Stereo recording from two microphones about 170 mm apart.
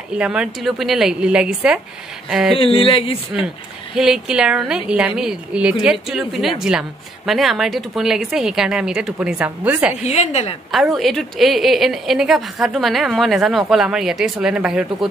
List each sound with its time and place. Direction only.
0.1 s a woman's voice: 5° right (ahead or behind)
2.5 s speech: 30° left (ahead or behind)
3.9 s a woman's voice: 5° right (ahead or behind)
10.0 s speech: 40° left (ahead or behind)
10.7 s a woman's voice: centre (ahead or behind)